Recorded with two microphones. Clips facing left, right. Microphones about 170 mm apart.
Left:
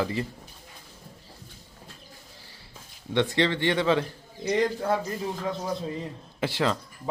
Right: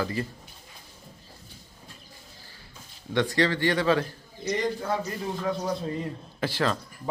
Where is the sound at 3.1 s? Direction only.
20° left (ahead or behind).